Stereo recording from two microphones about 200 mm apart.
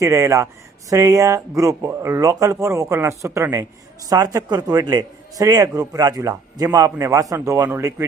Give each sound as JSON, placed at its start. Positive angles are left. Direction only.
{"t": 0.0, "sound": "speech", "side_deg": -15}